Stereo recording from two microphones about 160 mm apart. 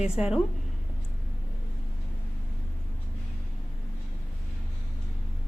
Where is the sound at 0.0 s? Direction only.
5° right (ahead or behind).